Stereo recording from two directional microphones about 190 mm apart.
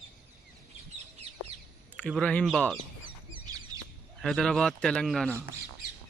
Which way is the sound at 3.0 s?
25° right (ahead or behind).